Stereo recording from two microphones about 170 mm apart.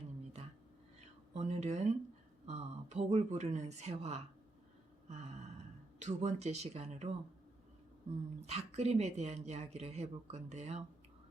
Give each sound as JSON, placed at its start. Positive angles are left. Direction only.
{"t": 1.0, "sound": "a sound", "side_deg": -40}
{"t": 2.5, "sound": "speech", "side_deg": -40}
{"t": 6.0, "sound": "speech", "side_deg": -45}
{"t": 8.4, "sound": "speech", "side_deg": -40}